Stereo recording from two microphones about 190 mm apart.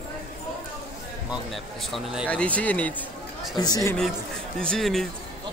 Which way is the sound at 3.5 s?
20° left (ahead or behind).